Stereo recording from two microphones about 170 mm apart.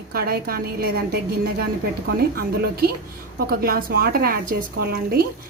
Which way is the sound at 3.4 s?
60° right (ahead or behind).